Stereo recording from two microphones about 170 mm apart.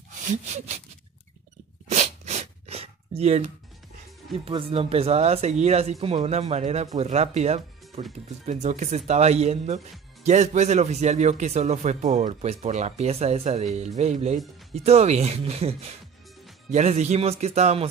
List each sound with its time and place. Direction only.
0.2 s speech: 45° right (ahead or behind)
1.9 s a sound: 40° right (ahead or behind)
4.5 s speech: 30° right (ahead or behind)